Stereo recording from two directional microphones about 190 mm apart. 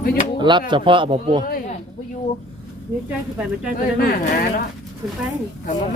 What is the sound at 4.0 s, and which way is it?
Speech, 45° left (ahead or behind).